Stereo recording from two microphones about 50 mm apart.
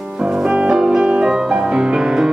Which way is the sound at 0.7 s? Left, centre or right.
Centre.